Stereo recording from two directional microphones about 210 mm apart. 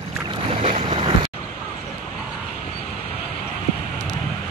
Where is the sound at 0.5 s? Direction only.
30° right (ahead or behind).